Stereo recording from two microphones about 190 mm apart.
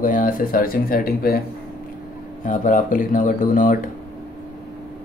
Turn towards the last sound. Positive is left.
turn(degrees=45)  # may be behind; listen again after turning